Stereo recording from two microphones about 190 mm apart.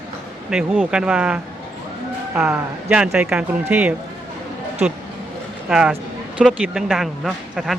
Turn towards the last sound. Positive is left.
turn(degrees=0)  # may be behind; listen again after turning